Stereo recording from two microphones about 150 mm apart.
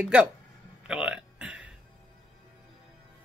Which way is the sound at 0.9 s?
5° right (ahead or behind).